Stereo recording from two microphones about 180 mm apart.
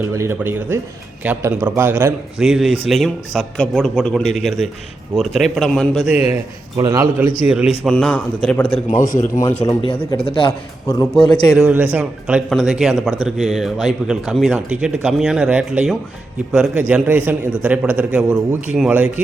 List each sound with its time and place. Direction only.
0.0 s a man's voice: 15° right (ahead or behind)
2.4 s speech: centre (ahead or behind)
4.2 s speech: 35° left (ahead or behind)
4.4 s speech: centre (ahead or behind)
6.7 s a man's voice: 20° right (ahead or behind)
7.4 s speech: 5° right (ahead or behind)
7.9 s speech: 5° left (ahead or behind)
9.0 s a man's voice: 45° left (ahead or behind)
9.6 s a man's voice: 30° left (ahead or behind)
11.5 s a man's voice: 5° right (ahead or behind)